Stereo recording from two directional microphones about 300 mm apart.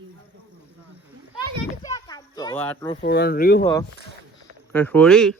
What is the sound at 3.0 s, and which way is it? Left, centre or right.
Speech, left.